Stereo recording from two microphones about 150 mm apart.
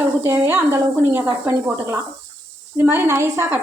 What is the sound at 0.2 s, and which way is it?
Speech, 15° right (ahead or behind).